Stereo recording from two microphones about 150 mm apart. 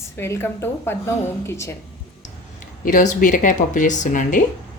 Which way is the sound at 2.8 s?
55° left (ahead or behind).